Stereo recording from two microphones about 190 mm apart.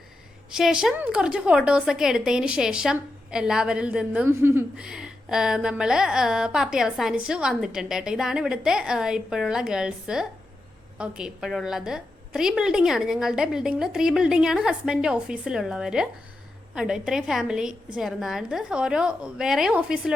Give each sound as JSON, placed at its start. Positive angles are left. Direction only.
{"t": 0.5, "sound": "a woman's voice", "side_deg": -5}